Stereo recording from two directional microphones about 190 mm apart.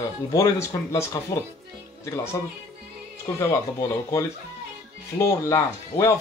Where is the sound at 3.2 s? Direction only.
15° left (ahead or behind).